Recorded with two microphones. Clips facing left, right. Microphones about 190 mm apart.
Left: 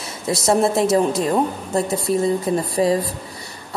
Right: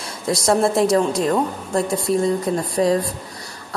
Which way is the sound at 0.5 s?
Centre (ahead or behind).